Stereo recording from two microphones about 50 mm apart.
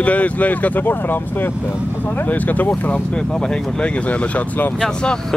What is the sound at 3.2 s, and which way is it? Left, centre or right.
Speech, centre.